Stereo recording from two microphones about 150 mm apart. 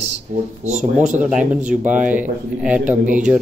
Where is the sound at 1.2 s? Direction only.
5° right (ahead or behind).